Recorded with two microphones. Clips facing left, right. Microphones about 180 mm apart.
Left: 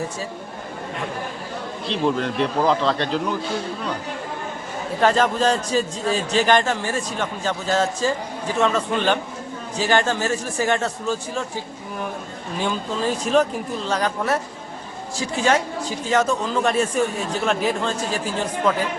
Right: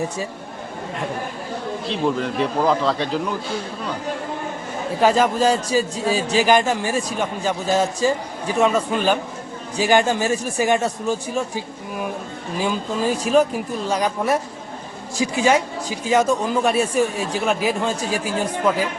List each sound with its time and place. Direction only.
1.9 s speech: 5° right (ahead or behind)
4.9 s a man's voice: 10° right (ahead or behind)